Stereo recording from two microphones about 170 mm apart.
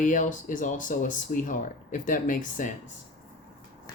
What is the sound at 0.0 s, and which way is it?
Speech, 50° left (ahead or behind).